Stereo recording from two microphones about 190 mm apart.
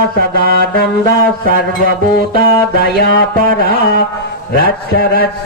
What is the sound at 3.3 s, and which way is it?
Mantra, 50° right (ahead or behind).